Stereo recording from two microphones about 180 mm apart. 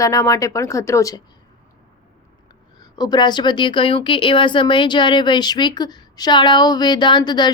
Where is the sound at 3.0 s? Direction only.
25° left (ahead or behind).